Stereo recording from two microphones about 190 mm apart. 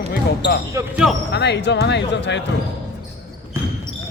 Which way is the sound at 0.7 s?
15° right (ahead or behind).